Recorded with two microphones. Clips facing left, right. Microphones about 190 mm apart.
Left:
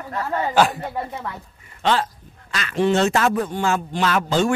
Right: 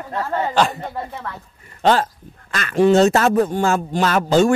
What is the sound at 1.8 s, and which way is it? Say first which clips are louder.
Speech: right 4 dB; 45° right (ahead or behind).